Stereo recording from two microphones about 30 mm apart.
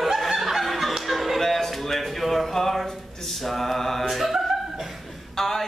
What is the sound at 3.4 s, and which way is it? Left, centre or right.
Mantra, centre.